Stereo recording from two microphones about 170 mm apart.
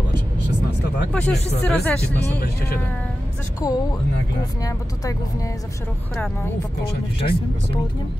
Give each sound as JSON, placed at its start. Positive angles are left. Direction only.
{"t": 1.1, "sound": "speech", "side_deg": 5}
{"t": 3.6, "sound": "speech", "side_deg": 20}
{"t": 7.2, "sound": "speech", "side_deg": 35}